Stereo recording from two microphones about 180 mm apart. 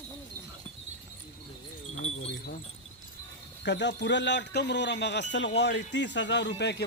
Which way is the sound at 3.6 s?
75° left (ahead or behind).